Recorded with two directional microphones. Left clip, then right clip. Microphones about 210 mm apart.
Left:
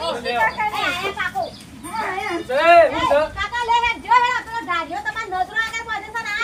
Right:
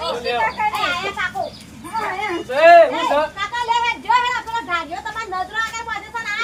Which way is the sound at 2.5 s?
15° right (ahead or behind).